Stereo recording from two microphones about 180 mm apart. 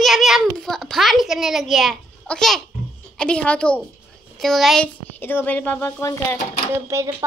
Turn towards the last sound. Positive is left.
turn(degrees=-15)  # may be behind; listen again after turning